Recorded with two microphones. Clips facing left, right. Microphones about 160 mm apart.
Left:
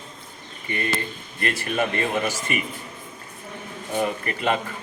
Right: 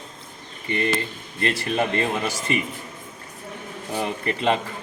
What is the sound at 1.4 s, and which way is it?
Speech, 25° right (ahead or behind).